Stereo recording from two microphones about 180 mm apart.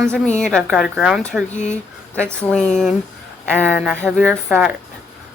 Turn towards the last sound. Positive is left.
turn(degrees=5)  # may be behind; listen again after turning